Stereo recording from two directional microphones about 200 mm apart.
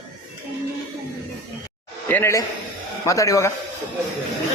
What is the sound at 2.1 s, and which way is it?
A man's voice, 15° left (ahead or behind).